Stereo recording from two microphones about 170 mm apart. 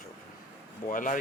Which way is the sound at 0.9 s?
50° left (ahead or behind).